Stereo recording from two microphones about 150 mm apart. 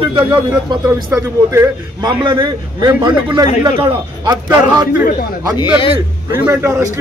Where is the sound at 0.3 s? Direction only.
25° right (ahead or behind).